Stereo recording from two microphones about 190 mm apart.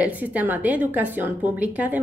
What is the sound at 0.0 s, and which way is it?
A woman's voice, 10° right (ahead or behind).